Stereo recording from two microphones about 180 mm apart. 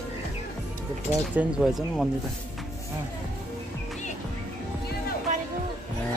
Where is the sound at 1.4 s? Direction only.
5° right (ahead or behind).